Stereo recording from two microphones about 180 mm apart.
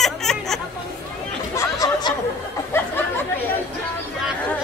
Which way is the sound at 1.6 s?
20° left (ahead or behind).